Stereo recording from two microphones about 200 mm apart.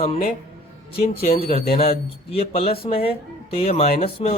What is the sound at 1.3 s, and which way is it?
Speech, 30° left (ahead or behind).